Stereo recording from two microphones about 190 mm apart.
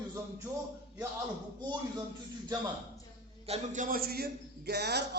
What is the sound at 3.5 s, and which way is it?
A man's voice, 45° right (ahead or behind).